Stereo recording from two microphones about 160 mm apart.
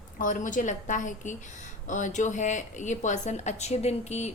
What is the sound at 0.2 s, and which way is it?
A woman's voice, 55° left (ahead or behind).